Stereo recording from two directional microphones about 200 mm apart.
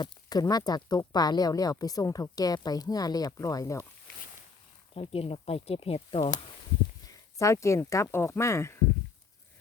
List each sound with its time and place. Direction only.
0.0 s speech: 20° left (ahead or behind)
4.9 s speech: 30° left (ahead or behind)
7.1 s speech: 15° left (ahead or behind)